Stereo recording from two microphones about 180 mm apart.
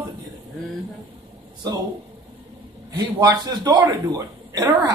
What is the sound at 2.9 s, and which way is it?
A man's voice, 20° right (ahead or behind).